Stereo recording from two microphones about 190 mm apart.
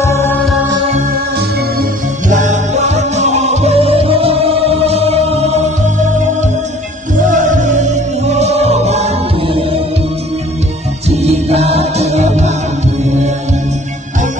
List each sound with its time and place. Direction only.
0.0 s music: 15° left (ahead or behind)
1.8 s music: 40° right (ahead or behind)
7.2 s music: 40° right (ahead or behind)
11.1 s music: 35° right (ahead or behind)